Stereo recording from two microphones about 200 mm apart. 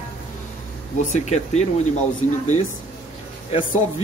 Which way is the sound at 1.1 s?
35° left (ahead or behind).